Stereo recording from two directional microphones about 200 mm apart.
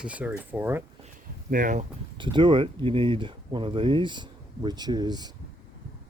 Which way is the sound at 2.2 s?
25° right (ahead or behind).